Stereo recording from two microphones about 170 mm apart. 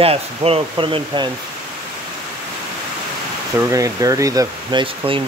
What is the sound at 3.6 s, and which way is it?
Speech, 20° right (ahead or behind).